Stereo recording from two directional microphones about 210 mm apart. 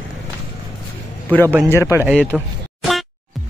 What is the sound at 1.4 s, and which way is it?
Speech, 15° right (ahead or behind).